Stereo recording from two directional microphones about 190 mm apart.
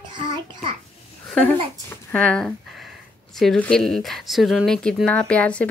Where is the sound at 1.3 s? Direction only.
5° left (ahead or behind).